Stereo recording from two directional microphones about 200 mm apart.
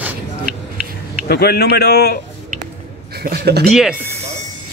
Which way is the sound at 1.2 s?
50° left (ahead or behind).